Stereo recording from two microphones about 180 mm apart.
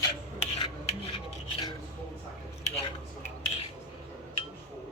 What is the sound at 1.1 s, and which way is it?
Rub, 30° left (ahead or behind).